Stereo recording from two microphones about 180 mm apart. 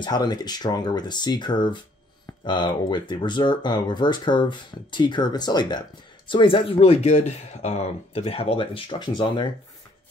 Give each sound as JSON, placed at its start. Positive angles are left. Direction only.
{"t": 0.0, "sound": "speech", "side_deg": 25}